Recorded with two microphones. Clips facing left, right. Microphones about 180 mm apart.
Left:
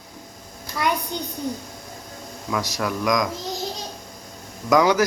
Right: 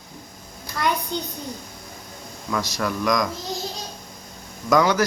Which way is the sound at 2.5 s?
10° left (ahead or behind).